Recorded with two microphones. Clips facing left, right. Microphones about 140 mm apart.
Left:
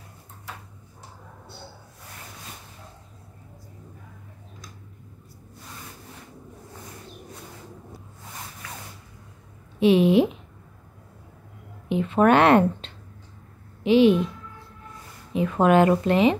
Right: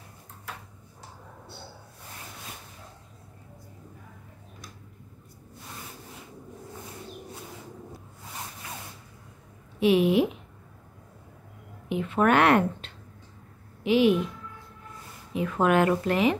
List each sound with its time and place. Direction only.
9.8 s a woman's voice: 25° left (ahead or behind)
11.9 s a woman's voice: 25° left (ahead or behind)
15.3 s a woman's voice: 25° left (ahead or behind)